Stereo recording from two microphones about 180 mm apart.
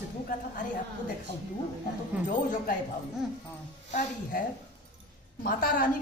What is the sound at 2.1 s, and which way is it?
Speech, 10° right (ahead or behind).